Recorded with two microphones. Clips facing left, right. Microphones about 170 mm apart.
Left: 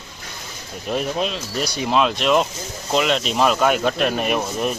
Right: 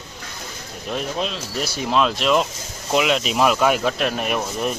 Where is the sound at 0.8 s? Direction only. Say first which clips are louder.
Left 3 dB; 5° left (ahead or behind).